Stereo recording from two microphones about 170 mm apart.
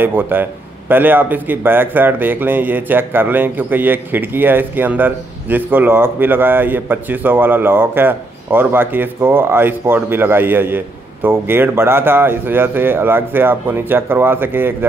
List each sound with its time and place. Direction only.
0.0 s a man's voice: 10° right (ahead or behind)